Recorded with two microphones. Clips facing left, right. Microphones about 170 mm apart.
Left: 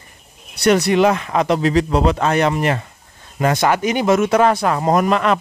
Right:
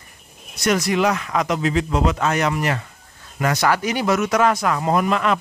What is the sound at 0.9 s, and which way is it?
Speech, 25° left (ahead or behind).